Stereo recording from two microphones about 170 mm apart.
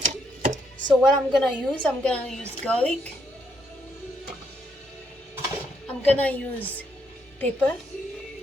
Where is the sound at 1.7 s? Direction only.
5° left (ahead or behind).